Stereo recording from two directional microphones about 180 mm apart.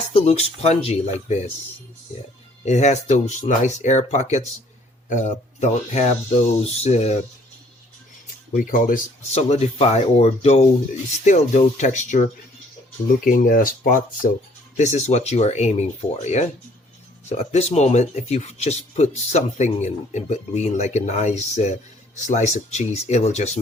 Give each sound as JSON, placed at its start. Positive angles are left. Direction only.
{"t": 0.1, "sound": "speech", "side_deg": 35}
{"t": 2.6, "sound": "speech", "side_deg": 40}
{"t": 8.5, "sound": "speech", "side_deg": 45}